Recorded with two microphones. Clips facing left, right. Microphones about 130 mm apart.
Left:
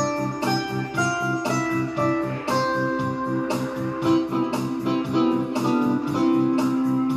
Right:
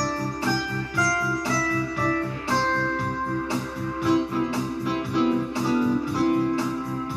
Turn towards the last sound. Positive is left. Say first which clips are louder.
# left 3 dB
turn(degrees=20)  # may be behind; listen again after turning